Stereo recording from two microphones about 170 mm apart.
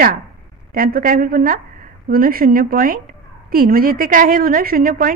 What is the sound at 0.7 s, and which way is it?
A woman's voice, 55° right (ahead or behind).